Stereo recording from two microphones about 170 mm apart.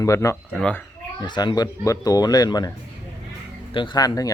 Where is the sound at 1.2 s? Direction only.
25° left (ahead or behind).